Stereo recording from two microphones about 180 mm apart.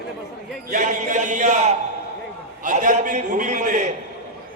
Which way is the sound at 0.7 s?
45° right (ahead or behind).